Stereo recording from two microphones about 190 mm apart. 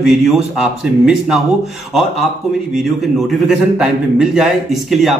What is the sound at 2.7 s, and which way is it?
A man's voice, centre (ahead or behind).